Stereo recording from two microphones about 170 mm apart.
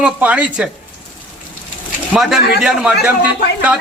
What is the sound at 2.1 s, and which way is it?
A man's voice, 5° right (ahead or behind).